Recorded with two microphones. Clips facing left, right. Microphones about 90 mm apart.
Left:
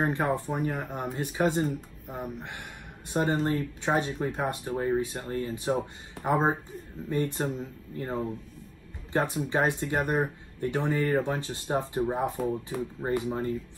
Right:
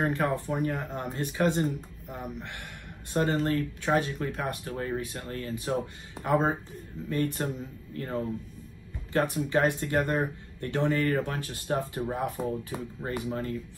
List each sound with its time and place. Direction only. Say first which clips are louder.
0.0 s speech: left 1 dB; 20° left (ahead or behind)